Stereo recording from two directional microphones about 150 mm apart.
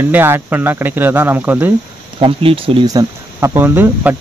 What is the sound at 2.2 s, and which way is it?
Speech, 40° right (ahead or behind).